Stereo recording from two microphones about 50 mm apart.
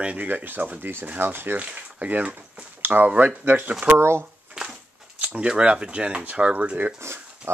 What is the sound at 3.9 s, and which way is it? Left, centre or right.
Speech, right.